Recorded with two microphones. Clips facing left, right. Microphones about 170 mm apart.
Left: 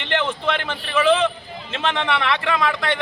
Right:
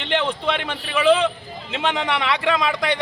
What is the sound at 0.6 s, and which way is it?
A man's voice, 10° right (ahead or behind).